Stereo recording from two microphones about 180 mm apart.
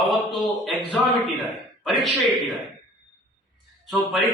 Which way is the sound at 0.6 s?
Centre (ahead or behind).